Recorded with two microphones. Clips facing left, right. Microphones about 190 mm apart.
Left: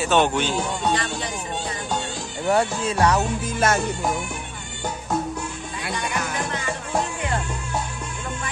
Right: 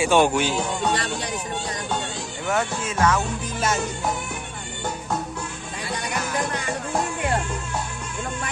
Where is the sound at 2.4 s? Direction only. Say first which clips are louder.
Left 4 dB; 35° left (ahead or behind).